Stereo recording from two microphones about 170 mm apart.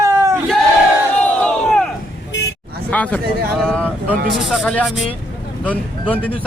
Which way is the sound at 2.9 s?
5° left (ahead or behind).